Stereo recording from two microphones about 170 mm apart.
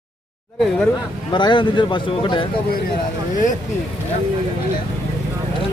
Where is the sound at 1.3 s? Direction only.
25° left (ahead or behind).